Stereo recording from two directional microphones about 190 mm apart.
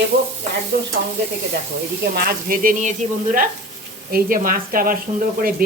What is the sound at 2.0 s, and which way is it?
Speech, 55° right (ahead or behind).